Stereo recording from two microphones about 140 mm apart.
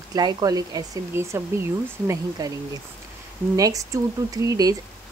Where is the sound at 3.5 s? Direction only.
25° right (ahead or behind).